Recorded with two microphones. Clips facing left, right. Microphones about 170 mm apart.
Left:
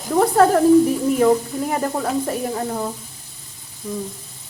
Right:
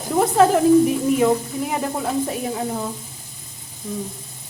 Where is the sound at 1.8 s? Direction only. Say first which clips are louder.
Left 1 dB; centre (ahead or behind).